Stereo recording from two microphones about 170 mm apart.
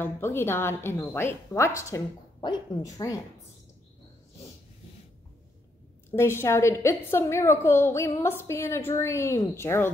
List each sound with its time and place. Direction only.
0.0 s a woman's voice: 15° left (ahead or behind)
6.1 s a woman's voice: 15° left (ahead or behind)